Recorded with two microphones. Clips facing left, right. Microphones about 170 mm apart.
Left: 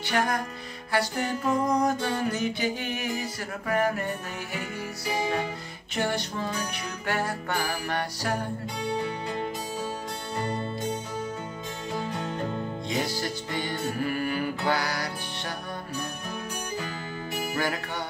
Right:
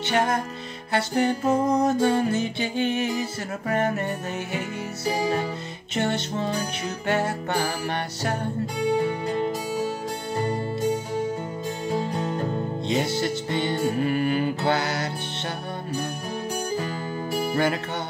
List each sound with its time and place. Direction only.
0.0 s music: 25° right (ahead or behind)
5.0 s music: 35° right (ahead or behind)
5.9 s music: 25° right (ahead or behind)
10.3 s music: 30° right (ahead or behind)
11.9 s music: 35° right (ahead or behind)
16.7 s music: 35° right (ahead or behind)